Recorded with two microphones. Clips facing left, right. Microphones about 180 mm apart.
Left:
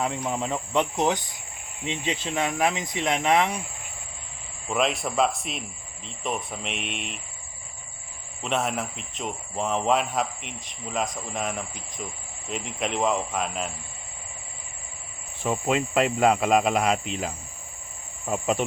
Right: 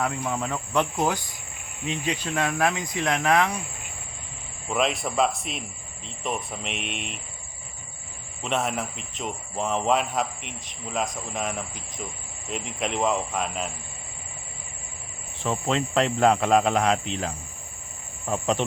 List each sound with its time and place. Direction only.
0.0 s speech: 20° left (ahead or behind)
4.7 s speech: centre (ahead or behind)
8.4 s speech: centre (ahead or behind)
15.4 s cricket: 10° left (ahead or behind)
18.3 s speech: 5° left (ahead or behind)